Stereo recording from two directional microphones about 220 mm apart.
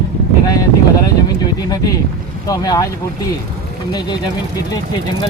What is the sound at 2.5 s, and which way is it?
Speech, 15° left (ahead or behind).